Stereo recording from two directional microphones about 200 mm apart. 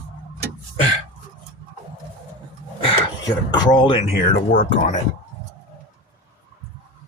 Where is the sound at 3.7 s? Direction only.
25° left (ahead or behind).